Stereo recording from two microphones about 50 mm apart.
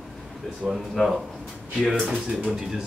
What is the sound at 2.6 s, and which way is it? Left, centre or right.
Speech, centre.